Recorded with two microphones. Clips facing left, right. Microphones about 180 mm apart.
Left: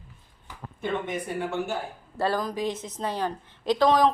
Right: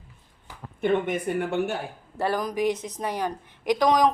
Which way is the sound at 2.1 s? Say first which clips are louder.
Right 1 dB; 15° right (ahead or behind).